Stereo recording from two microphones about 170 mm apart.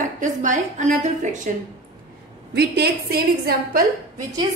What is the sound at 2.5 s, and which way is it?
A woman's voice, 70° right (ahead or behind).